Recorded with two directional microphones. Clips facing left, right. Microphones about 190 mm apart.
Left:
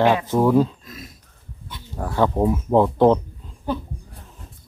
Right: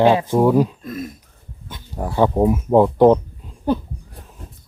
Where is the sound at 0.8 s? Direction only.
55° right (ahead or behind).